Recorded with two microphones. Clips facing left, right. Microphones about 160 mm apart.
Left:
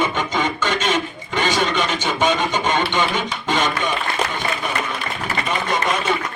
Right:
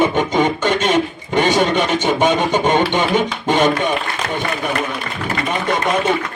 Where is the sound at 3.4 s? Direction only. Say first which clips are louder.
Right 5 dB; 50° right (ahead or behind).